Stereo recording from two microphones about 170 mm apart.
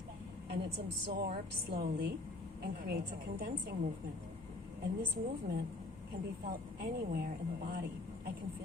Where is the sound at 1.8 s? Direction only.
60° right (ahead or behind).